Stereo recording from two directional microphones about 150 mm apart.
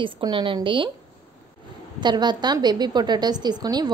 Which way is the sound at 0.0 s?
30° right (ahead or behind).